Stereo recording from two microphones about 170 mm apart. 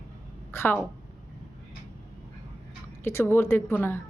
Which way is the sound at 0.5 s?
10° left (ahead or behind).